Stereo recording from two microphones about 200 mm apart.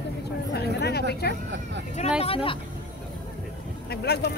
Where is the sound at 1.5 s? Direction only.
60° right (ahead or behind).